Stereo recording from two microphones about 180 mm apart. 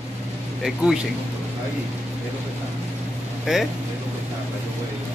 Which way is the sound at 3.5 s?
5° right (ahead or behind).